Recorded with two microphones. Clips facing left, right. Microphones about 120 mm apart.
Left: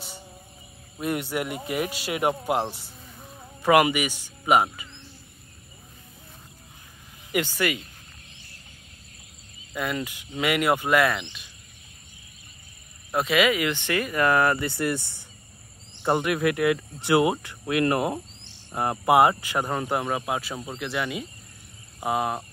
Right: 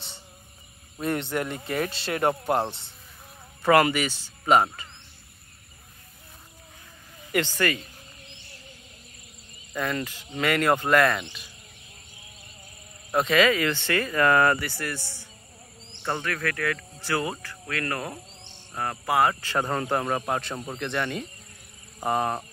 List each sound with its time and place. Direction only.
1.0 s speech: 10° left (ahead or behind)
3.6 s speech: 15° left (ahead or behind)
7.3 s speech: 10° left (ahead or behind)
9.8 s speech: 10° left (ahead or behind)
11.2 s speech: 10° right (ahead or behind)
13.1 s speech: 5° left (ahead or behind)
16.0 s speech: 15° left (ahead or behind)